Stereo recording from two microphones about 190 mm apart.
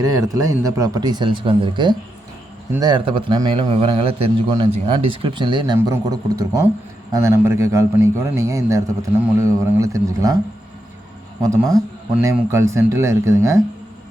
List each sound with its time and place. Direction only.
0.0 s a man's voice: 20° right (ahead or behind)
11.4 s a man's voice: 15° right (ahead or behind)